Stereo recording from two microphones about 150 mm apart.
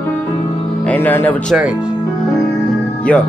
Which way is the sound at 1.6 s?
5° right (ahead or behind).